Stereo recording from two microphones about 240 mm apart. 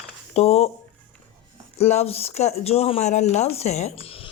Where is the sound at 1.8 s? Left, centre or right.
Left.